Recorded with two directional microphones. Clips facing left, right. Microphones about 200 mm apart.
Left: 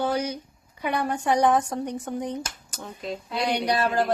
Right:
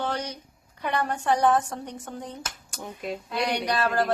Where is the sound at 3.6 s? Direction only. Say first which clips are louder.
Left 2 dB; 15° left (ahead or behind).